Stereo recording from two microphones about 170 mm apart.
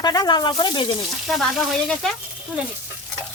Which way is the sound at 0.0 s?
25° left (ahead or behind).